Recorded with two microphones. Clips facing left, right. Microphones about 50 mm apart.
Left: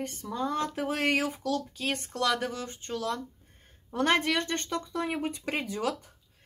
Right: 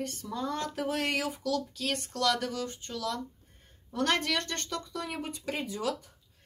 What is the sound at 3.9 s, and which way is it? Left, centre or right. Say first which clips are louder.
Speech: left 3 dB; left.